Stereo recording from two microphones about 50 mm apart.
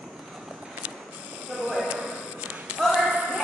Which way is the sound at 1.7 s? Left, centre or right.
Centre.